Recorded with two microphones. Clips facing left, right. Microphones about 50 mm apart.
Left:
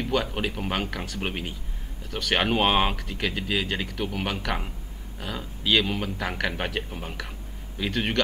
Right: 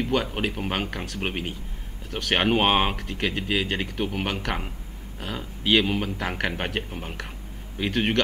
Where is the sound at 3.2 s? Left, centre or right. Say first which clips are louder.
Right 2 dB; right.